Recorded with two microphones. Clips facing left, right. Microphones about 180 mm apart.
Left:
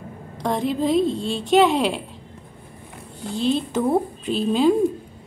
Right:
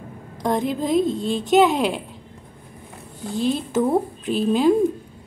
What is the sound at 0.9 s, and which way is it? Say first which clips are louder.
Speech: right 1 dB; 45° right (ahead or behind).